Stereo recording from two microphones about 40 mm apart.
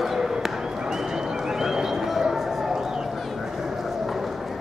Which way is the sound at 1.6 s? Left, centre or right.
Centre.